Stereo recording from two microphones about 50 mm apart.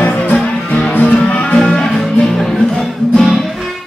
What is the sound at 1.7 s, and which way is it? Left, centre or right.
Music, centre.